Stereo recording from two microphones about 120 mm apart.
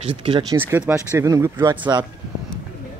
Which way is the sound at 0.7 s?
20° right (ahead or behind).